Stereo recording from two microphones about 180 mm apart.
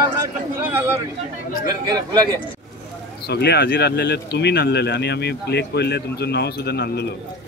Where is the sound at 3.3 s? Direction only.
65° left (ahead or behind).